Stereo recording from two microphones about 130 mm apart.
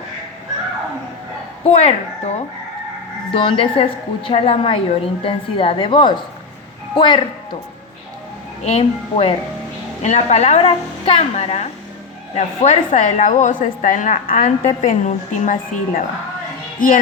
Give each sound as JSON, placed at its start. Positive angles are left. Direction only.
{"t": 1.6, "sound": "a woman's voice", "side_deg": 50}
{"t": 3.3, "sound": "a woman's voice", "side_deg": 45}
{"t": 8.6, "sound": "a woman's voice", "side_deg": 50}
{"t": 10.0, "sound": "a woman's voice", "side_deg": 60}
{"t": 14.8, "sound": "a woman's voice", "side_deg": 70}
{"t": 16.8, "sound": "music", "side_deg": 90}